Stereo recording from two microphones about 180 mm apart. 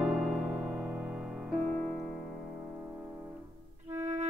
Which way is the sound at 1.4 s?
5° left (ahead or behind).